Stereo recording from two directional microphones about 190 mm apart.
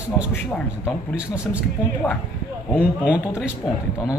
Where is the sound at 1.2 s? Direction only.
5° right (ahead or behind).